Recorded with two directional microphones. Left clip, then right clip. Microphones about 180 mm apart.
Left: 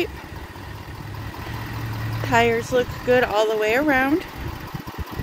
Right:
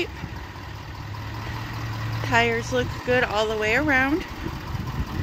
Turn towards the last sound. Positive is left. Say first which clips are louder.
# left 2 dB
turn(degrees=50)  # may be behind; listen again after turning